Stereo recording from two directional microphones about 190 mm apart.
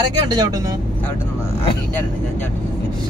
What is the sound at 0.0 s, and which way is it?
Speech, 20° right (ahead or behind).